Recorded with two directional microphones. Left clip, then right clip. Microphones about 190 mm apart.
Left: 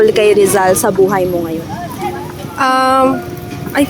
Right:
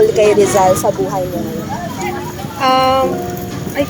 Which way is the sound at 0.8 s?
70° left (ahead or behind).